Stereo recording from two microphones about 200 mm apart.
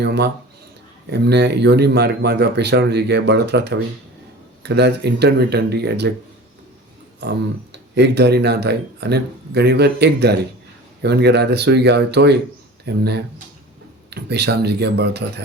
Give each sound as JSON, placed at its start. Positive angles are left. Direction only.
{"t": 0.0, "sound": "a sound", "side_deg": -55}
{"t": 1.1, "sound": "speech", "side_deg": -55}
{"t": 7.2, "sound": "speech", "side_deg": -60}